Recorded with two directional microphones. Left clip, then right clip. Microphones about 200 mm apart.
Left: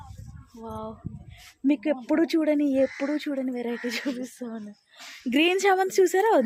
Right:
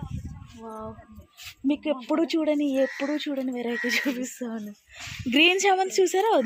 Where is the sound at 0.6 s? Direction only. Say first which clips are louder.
Left 1 dB; 5° left (ahead or behind).